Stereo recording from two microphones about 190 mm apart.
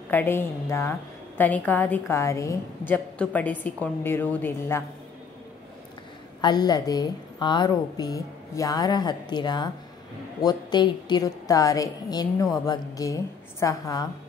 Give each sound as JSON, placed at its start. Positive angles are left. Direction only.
{"t": 0.1, "sound": "a woman's voice", "side_deg": 10}
{"t": 6.4, "sound": "a woman's voice", "side_deg": 20}